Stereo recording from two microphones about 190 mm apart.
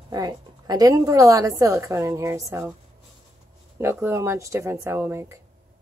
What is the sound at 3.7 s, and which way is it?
A woman's voice, 15° right (ahead or behind).